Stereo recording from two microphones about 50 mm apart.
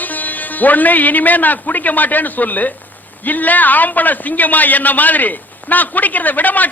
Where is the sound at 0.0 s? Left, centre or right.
Left.